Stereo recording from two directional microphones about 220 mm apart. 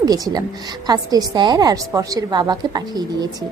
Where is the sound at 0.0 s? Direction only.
15° right (ahead or behind).